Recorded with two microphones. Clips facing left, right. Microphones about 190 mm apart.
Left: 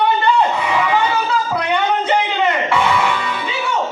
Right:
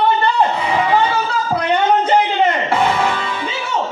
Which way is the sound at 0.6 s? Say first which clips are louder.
Right 1 dB; 35° right (ahead or behind).